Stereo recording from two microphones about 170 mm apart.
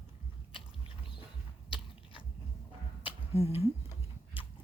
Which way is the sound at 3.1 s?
35° left (ahead or behind).